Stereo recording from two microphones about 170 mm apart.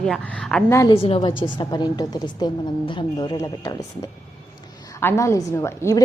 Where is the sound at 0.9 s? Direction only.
35° left (ahead or behind).